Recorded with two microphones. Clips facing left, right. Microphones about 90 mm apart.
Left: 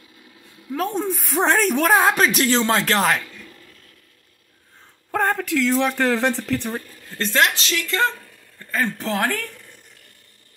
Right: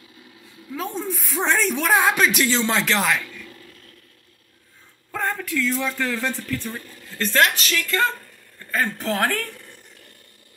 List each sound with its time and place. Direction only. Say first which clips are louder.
0.7 s speech: left 5 dB; 50° left (ahead or behind); by 3.4 s 35° left (ahead or behind)
5.1 s speech: left 5 dB; 65° left (ahead or behind); by 6.7 s 85° left
7.2 s speech: even; 30° left (ahead or behind)
9.2 s a woman's voice: right 1 dB; 15° left (ahead or behind)